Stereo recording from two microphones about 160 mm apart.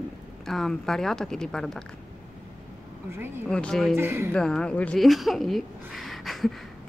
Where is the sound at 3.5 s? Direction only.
5° left (ahead or behind).